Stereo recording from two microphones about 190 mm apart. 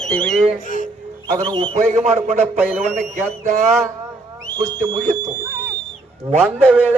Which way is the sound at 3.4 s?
40° right (ahead or behind).